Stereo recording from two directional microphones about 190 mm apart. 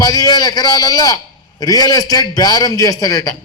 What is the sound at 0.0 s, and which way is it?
A man's voice, 20° left (ahead or behind).